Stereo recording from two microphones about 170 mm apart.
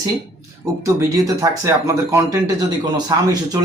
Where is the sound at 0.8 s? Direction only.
20° right (ahead or behind).